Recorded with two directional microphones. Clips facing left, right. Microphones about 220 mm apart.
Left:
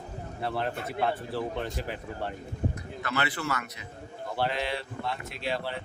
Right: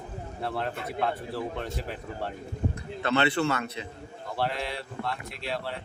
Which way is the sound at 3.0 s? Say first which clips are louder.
Right 7 dB; 25° right (ahead or behind).